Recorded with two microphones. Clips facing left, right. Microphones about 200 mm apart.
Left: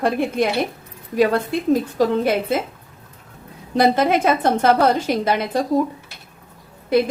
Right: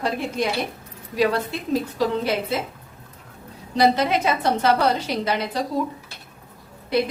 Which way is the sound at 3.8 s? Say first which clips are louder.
Left 3 dB; 50° left (ahead or behind).